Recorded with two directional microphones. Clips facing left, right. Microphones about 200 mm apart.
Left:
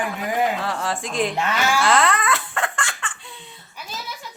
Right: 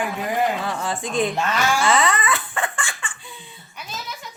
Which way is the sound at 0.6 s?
Centre (ahead or behind).